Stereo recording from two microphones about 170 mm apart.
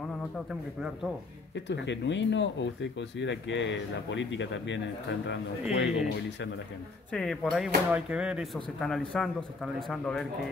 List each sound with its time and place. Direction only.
0.5 s speech: 5° right (ahead or behind)
1.5 s speech: 90° left
7.1 s speech: 5° left (ahead or behind)